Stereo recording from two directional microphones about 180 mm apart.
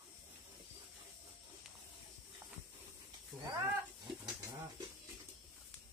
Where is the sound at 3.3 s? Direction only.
20° right (ahead or behind).